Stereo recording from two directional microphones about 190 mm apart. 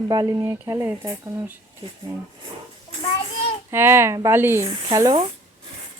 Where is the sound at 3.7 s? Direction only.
10° right (ahead or behind).